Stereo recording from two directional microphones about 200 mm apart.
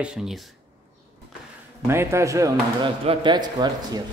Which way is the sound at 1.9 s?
10° right (ahead or behind).